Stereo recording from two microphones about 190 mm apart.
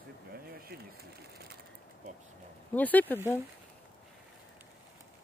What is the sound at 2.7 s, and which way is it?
Speech, 10° left (ahead or behind).